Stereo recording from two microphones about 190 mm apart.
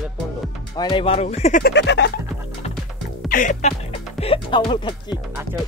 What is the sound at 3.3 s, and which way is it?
Speech, 45° left (ahead or behind).